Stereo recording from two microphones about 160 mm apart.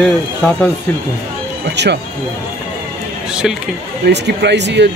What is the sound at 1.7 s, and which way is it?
Speech, 90° right.